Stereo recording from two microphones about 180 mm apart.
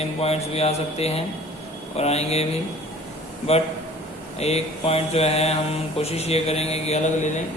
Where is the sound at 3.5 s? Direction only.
35° left (ahead or behind).